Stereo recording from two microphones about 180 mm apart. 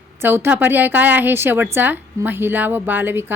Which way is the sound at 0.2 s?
10° right (ahead or behind).